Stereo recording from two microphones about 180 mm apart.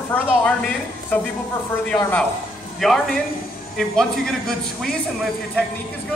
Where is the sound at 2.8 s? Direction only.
Centre (ahead or behind).